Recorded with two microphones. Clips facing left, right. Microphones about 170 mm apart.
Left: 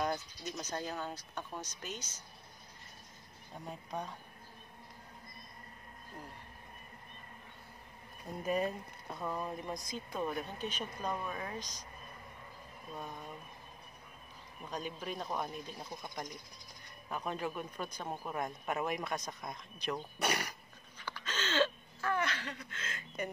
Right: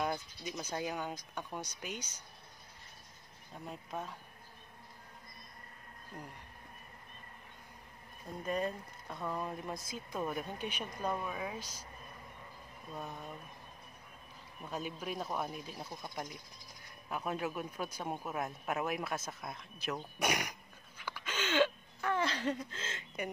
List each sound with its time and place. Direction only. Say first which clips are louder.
0.0 s speech: left 1 dB; 10° right (ahead or behind)
3.6 s speech: even; centre (ahead or behind)
8.4 s speech: left 2 dB; 5° left (ahead or behind)
12.9 s speech: right 1 dB; 5° right (ahead or behind)
14.7 s speech: right 1 dB; 5° right (ahead or behind)
21.0 s a sound: right 1 dB; 10° right (ahead or behind)
22.1 s chuckle: right 1 dB; 30° right (ahead or behind)
22.7 s speech: right 1 dB; 25° right (ahead or behind)